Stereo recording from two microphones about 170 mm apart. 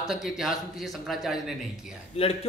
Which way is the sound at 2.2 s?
35° left (ahead or behind).